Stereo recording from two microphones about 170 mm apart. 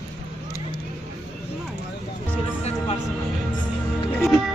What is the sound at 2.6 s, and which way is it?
Music, 40° left (ahead or behind).